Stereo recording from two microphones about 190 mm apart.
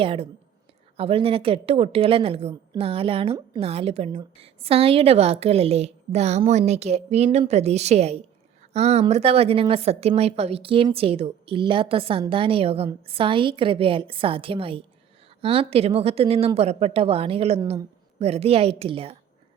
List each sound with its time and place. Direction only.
0.0 s a woman's voice: 30° right (ahead or behind)